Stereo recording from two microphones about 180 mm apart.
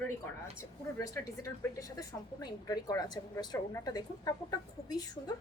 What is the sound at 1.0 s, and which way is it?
A woman's voice, 15° left (ahead or behind).